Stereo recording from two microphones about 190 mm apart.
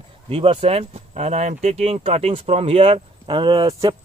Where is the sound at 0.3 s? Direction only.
30° right (ahead or behind).